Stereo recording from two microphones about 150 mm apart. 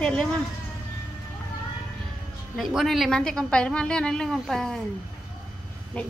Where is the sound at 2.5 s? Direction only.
Centre (ahead or behind).